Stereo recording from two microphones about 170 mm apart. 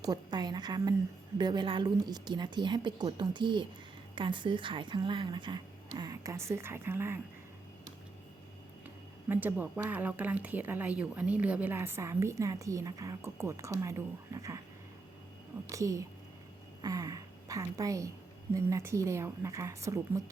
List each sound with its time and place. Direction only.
0.0 s speech: 25° right (ahead or behind)
9.3 s speech: 10° right (ahead or behind)
15.7 s a woman's voice: 20° right (ahead or behind)